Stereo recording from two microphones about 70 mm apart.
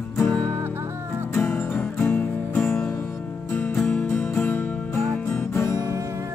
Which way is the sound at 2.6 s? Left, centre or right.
Centre.